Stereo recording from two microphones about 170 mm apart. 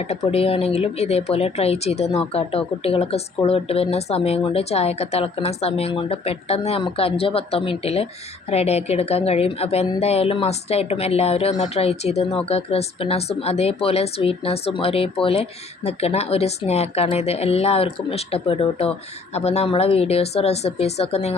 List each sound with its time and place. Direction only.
0.3 s speech: 35° left (ahead or behind)